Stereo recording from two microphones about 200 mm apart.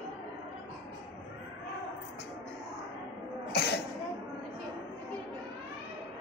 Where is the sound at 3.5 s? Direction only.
55° left (ahead or behind).